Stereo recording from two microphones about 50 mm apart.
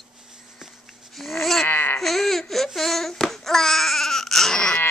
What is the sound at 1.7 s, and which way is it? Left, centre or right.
Baby cry, left.